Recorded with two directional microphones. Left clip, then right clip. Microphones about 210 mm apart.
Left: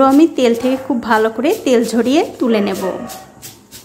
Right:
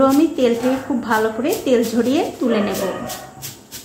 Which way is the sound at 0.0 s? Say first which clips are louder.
Left 4 dB; 35° left (ahead or behind).